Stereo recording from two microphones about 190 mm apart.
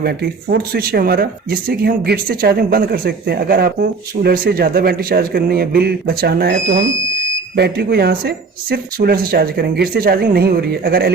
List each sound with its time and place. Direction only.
0.0 s speech: 55° right (ahead or behind)